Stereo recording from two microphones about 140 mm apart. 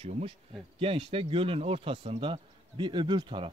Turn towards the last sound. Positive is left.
turn(degrees=-35)  # may be behind; listen again after turning